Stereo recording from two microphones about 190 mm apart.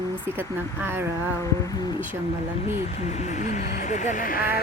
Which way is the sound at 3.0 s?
35° left (ahead or behind).